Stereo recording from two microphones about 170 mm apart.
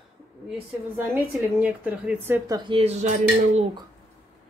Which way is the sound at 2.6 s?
35° right (ahead or behind).